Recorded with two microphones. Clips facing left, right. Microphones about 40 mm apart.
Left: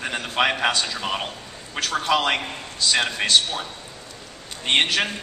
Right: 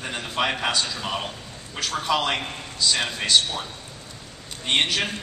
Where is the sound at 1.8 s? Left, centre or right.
Left.